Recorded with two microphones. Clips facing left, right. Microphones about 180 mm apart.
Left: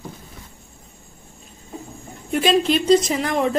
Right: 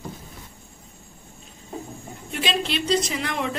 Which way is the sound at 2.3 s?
45° left (ahead or behind).